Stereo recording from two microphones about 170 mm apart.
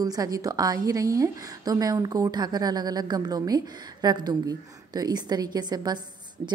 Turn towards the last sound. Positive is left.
turn(degrees=-25)  # may be behind; listen again after turning